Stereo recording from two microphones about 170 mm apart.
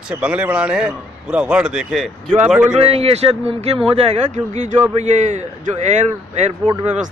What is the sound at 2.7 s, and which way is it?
A man's voice, 35° right (ahead or behind).